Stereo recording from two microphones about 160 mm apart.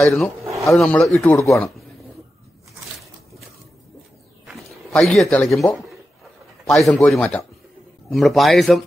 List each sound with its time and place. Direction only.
0.0 s a man's voice: centre (ahead or behind)
0.4 s a sound: 20° right (ahead or behind)
0.7 s a man's voice: 5° left (ahead or behind)
1.4 s speech: 20° left (ahead or behind)
4.5 s a sound: centre (ahead or behind)
5.6 s a man's voice: centre (ahead or behind)